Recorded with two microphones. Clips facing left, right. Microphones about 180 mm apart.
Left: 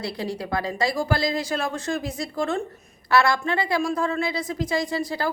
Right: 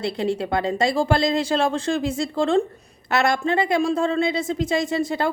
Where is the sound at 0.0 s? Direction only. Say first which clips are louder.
Right 6 dB; 25° right (ahead or behind).